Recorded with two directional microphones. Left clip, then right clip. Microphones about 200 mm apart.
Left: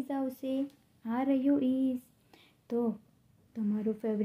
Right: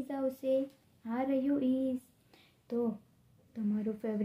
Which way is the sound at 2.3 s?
30° left (ahead or behind).